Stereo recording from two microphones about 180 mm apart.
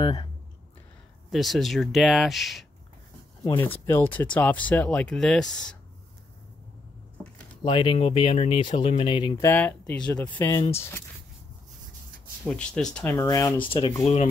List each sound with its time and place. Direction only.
0.0 s speech: 25° left (ahead or behind)
1.3 s speech: centre (ahead or behind)
3.4 s speech: 15° left (ahead or behind)
7.6 s speech: 30° left (ahead or behind)
9.4 s speech: 10° left (ahead or behind)
12.4 s speech: 5° left (ahead or behind)
13.0 s speech: 15° left (ahead or behind); by 14.3 s 35° left (ahead or behind)